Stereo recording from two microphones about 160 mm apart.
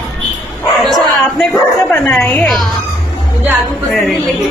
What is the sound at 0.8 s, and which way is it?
A woman's voice, centre (ahead or behind).